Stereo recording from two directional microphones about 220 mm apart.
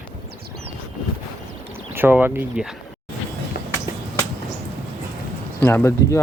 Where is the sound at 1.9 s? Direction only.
10° right (ahead or behind).